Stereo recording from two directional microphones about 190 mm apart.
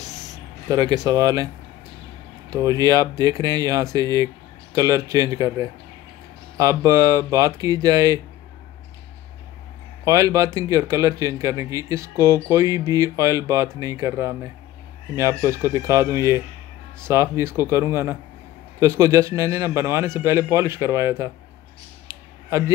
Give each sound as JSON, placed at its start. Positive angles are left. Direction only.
{"t": 0.7, "sound": "speech", "side_deg": -20}
{"t": 2.5, "sound": "a man's voice", "side_deg": -20}
{"t": 10.0, "sound": "a man's voice", "side_deg": -15}